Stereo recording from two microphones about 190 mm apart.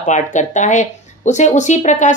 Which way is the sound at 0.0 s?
40° left (ahead or behind).